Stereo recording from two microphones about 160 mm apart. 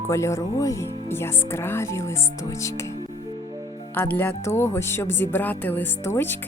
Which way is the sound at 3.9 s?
15° left (ahead or behind).